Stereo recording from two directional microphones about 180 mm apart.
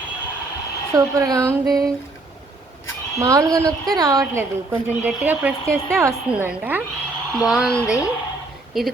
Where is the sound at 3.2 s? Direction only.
20° right (ahead or behind).